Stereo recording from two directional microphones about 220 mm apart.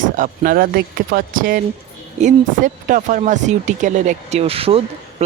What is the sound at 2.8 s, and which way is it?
Speech, 35° right (ahead or behind).